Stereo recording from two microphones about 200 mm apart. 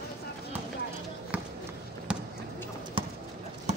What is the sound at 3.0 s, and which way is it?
Clip-clop, 25° right (ahead or behind).